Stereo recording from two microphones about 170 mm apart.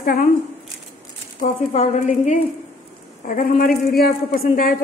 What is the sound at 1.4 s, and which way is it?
A woman's voice, 45° left (ahead or behind).